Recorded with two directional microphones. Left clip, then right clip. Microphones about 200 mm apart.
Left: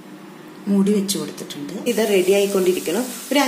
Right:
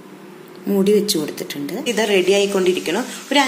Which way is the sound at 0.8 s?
45° right (ahead or behind).